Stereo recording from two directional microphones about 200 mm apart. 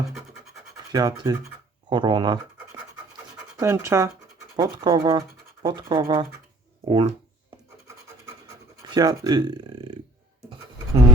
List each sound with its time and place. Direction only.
0.9 s speech: 20° right (ahead or behind)
3.6 s speech: 15° right (ahead or behind)
8.9 s speech: 20° right (ahead or behind)